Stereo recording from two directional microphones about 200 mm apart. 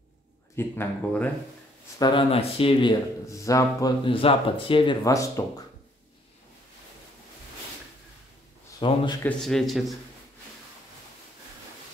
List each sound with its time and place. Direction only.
0.6 s speech: 10° left (ahead or behind)
2.0 s speech: 25° left (ahead or behind)
8.7 s speech: 20° left (ahead or behind)
9.2 s a man's voice: centre (ahead or behind)